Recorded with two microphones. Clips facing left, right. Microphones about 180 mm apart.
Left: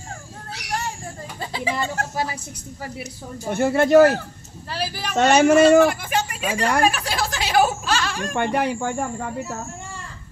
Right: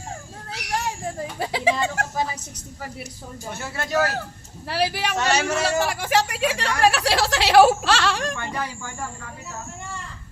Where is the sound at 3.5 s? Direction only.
55° left (ahead or behind).